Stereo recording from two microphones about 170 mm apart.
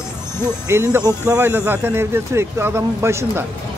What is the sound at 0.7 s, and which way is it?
Speech, 15° right (ahead or behind).